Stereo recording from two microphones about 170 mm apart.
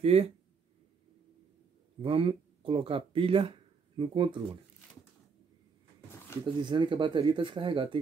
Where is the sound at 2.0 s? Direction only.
35° right (ahead or behind).